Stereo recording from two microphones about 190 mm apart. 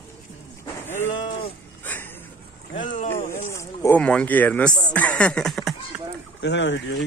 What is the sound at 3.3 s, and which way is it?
Speech, 15° left (ahead or behind).